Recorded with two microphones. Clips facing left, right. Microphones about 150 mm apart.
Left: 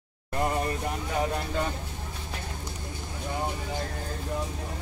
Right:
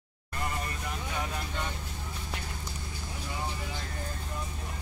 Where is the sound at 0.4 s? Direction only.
40° left (ahead or behind).